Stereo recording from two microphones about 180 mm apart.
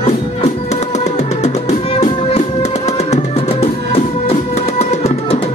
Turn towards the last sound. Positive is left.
turn(degrees=35)  # may be behind; listen again after turning